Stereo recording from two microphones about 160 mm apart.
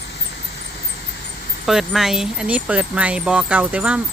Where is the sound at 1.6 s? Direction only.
Centre (ahead or behind).